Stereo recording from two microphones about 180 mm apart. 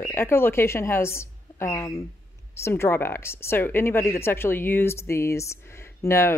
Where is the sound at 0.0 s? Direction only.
15° left (ahead or behind).